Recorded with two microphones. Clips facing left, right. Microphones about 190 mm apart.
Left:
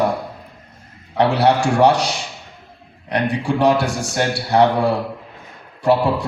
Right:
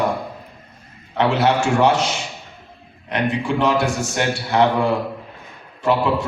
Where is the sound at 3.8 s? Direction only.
35° left (ahead or behind).